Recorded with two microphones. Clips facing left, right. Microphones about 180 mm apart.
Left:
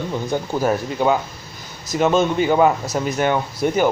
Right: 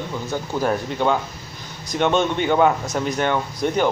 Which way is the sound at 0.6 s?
5° left (ahead or behind).